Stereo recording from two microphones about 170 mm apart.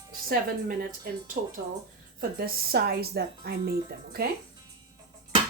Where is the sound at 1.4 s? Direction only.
55° right (ahead or behind).